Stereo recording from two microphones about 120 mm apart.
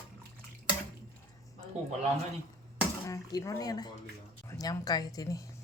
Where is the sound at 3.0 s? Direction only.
30° left (ahead or behind).